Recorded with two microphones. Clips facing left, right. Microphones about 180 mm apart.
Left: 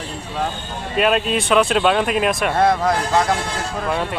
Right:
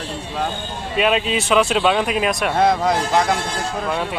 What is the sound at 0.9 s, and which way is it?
Speech, centre (ahead or behind).